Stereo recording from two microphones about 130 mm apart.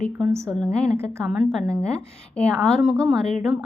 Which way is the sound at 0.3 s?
20° right (ahead or behind).